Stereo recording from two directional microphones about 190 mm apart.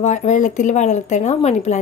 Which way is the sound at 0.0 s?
40° left (ahead or behind).